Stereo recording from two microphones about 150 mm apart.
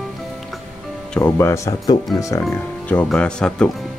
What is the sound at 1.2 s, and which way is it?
Speech, 20° left (ahead or behind).